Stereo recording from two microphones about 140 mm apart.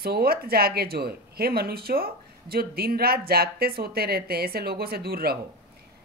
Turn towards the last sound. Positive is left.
turn(degrees=-90)